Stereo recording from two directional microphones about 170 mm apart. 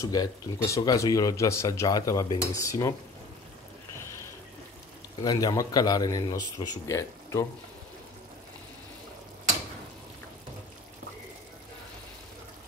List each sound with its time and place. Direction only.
0.0 s speech: 20° left (ahead or behind)
5.2 s speech: 25° left (ahead or behind)